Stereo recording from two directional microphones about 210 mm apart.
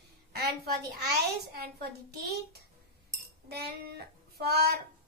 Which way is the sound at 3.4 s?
50° right (ahead or behind).